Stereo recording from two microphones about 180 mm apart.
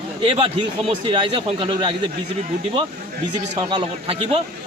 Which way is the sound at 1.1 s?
30° right (ahead or behind).